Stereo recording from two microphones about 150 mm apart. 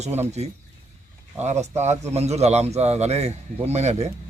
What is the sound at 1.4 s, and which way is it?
Speech, 50° right (ahead or behind).